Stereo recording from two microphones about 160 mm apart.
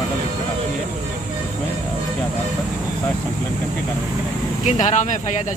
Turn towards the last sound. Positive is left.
turn(degrees=50)  # may be behind; listen again after turning